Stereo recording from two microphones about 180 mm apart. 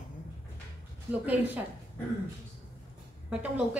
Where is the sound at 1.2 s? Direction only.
10° right (ahead or behind).